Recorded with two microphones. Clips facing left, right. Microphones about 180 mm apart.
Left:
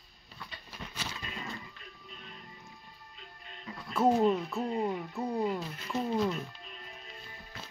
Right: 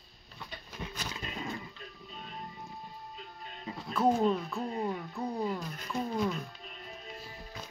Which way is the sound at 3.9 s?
5° left (ahead or behind).